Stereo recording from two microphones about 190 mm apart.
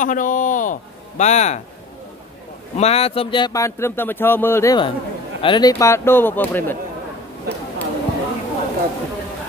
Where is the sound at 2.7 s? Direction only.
35° left (ahead or behind); by 6.8 s 10° left (ahead or behind).